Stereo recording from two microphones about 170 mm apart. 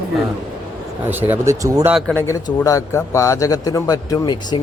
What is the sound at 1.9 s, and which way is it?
Speech, centre (ahead or behind).